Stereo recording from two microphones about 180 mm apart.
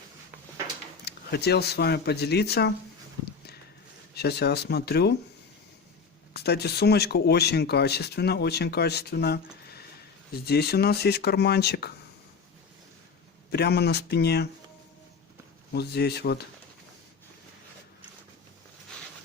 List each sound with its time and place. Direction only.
1.0 s speech: 65° left (ahead or behind)
4.1 s speech: 65° left (ahead or behind)
6.3 s speech: 65° left (ahead or behind)
13.5 s speech: 65° left (ahead or behind)
15.7 s speech: 65° left (ahead or behind)